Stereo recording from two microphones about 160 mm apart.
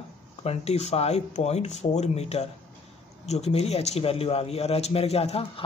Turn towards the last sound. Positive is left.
turn(degrees=40)  # may be behind; listen again after turning